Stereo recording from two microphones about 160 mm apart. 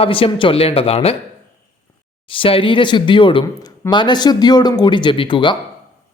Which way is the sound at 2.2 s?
35° left (ahead or behind).